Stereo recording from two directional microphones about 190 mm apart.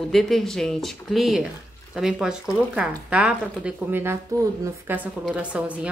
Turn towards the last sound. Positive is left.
turn(degrees=-5)  # may be behind; listen again after turning